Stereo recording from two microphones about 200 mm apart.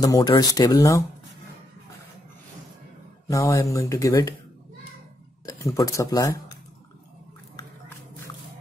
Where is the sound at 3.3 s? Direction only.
15° left (ahead or behind).